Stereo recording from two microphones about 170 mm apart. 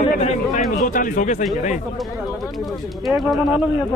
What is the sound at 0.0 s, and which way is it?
Speech, 45° left (ahead or behind).